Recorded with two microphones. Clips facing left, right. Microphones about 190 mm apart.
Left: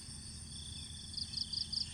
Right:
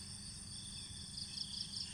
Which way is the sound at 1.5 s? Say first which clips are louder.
Left 2 dB; 35° left (ahead or behind).